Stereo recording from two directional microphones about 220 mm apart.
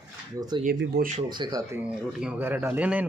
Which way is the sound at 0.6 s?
40° right (ahead or behind).